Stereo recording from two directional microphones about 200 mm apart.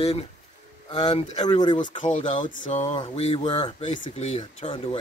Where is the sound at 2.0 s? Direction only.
40° left (ahead or behind).